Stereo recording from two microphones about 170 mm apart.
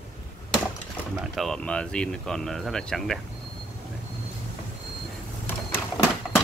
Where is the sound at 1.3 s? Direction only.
5° left (ahead or behind).